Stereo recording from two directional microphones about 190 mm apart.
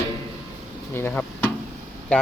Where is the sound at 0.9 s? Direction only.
10° left (ahead or behind).